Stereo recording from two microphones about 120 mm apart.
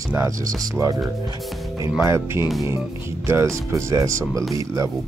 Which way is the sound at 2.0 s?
25° right (ahead or behind).